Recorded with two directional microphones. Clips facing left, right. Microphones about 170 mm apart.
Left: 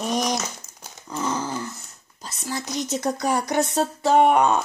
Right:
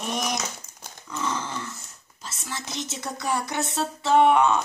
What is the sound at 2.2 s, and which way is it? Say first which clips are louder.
Speech: left 5 dB; 35° left (ahead or behind).